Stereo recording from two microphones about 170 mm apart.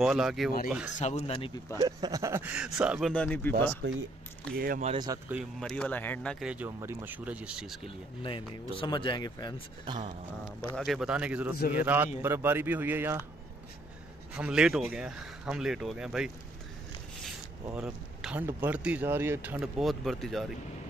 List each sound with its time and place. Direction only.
0.0 s speech: 5° right (ahead or behind)
0.9 s speech: 40° left (ahead or behind)
1.8 s speech: 20° right (ahead or behind); by 3.1 s 5° right (ahead or behind)
3.1 s speech: 10° left (ahead or behind)
4.6 s speech: 60° right (ahead or behind)
4.9 s speech: 25° right (ahead or behind)
5.3 s speech: centre (ahead or behind)
6.4 s speech: 10° right (ahead or behind)
8.2 s speech: 30° left (ahead or behind)
10.8 s speech: centre (ahead or behind)
14.3 s speech: 5° right (ahead or behind)
17.7 s speech: 5° right (ahead or behind)